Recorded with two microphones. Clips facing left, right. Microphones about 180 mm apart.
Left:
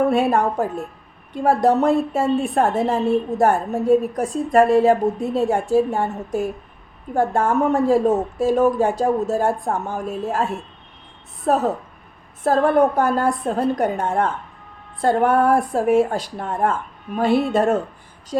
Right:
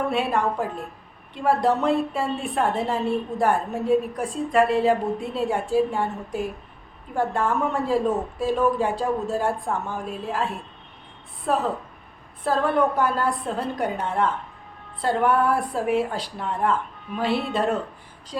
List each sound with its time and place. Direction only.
0.1 s a woman's voice: 45° left (ahead or behind)